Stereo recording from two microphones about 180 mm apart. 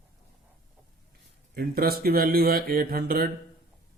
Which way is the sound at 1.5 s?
55° right (ahead or behind).